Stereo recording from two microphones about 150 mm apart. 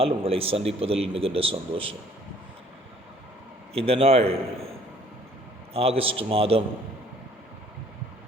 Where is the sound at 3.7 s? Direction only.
40° right (ahead or behind).